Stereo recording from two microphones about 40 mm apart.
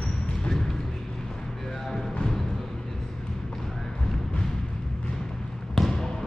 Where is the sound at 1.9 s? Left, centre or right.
Centre.